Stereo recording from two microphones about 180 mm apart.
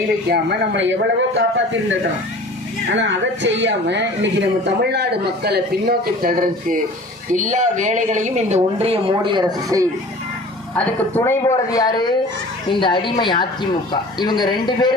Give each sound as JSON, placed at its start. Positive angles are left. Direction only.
{"t": 0.3, "sound": "a man's voice", "side_deg": -75}
{"t": 7.3, "sound": "speech", "side_deg": -45}
{"t": 10.8, "sound": "speech", "side_deg": 10}